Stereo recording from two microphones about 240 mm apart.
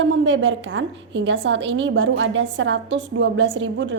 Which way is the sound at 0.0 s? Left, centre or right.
Right.